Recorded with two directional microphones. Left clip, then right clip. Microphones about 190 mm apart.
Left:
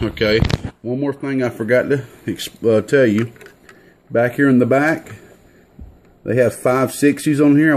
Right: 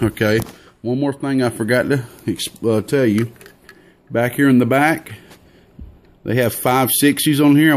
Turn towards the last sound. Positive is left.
turn(degrees=-20)  # may be behind; listen again after turning